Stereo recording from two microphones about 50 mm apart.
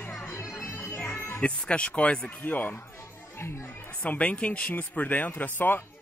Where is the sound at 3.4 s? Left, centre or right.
Left.